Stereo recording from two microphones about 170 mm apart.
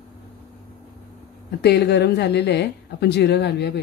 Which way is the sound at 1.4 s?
75° left (ahead or behind).